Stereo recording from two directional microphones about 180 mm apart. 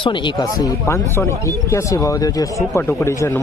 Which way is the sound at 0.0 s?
25° left (ahead or behind).